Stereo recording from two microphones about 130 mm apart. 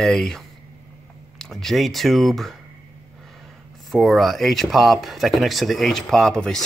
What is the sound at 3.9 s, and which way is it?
Speech, centre (ahead or behind).